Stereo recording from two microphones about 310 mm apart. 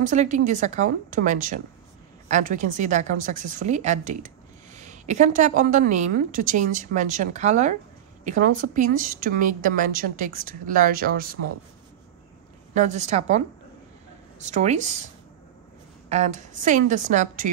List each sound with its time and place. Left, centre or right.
0.0 s a woman's voice: right
12.7 s a woman's voice: right
14.4 s a woman's voice: right
16.1 s a woman's voice: right